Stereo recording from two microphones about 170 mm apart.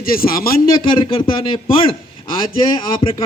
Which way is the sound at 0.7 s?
30° left (ahead or behind).